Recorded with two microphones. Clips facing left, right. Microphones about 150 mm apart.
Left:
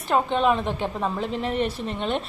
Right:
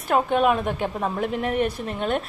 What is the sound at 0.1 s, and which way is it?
A woman's voice, 10° right (ahead or behind).